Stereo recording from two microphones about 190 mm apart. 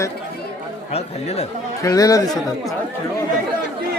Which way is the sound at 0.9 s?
35° left (ahead or behind).